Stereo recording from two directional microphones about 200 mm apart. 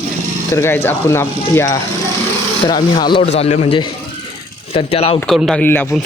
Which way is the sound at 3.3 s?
30° left (ahead or behind).